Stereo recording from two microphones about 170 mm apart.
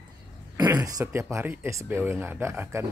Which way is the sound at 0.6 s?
20° right (ahead or behind).